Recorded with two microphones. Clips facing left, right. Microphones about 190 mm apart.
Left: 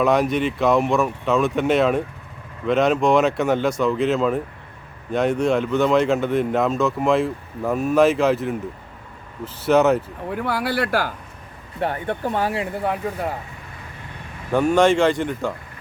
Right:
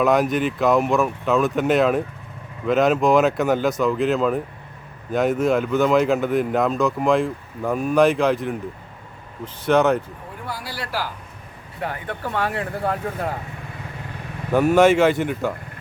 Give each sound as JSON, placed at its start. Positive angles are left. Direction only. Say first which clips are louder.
{"t": 0.0, "sound": "speech", "louder": "even", "side_deg": 0}
{"t": 10.3, "sound": "speech", "louder": "left 10 dB", "side_deg": 65}
{"t": 11.8, "sound": "speech", "louder": "left 5 dB", "side_deg": 25}
{"t": 14.5, "sound": "speech", "louder": "right 1 dB", "side_deg": -5}